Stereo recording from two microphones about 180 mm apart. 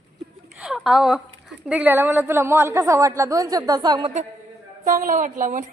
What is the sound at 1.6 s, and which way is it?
A woman's voice, 10° right (ahead or behind).